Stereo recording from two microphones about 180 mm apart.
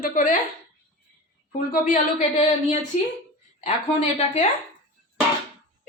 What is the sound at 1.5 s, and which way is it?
Speech, 50° left (ahead or behind).